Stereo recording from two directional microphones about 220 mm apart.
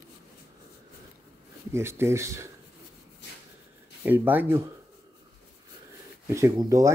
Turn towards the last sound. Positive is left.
turn(degrees=-15)  # may be behind; listen again after turning